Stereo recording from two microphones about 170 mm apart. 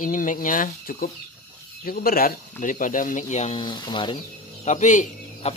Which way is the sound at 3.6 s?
25° left (ahead or behind).